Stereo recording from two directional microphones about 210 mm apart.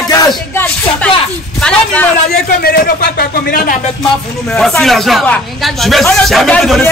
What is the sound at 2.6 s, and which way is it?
Speech, 50° left (ahead or behind).